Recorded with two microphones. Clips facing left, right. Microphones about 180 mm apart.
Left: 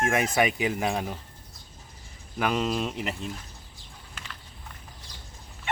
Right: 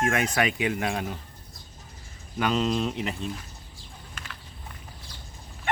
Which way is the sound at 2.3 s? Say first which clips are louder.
Right 1 dB; 5° left (ahead or behind).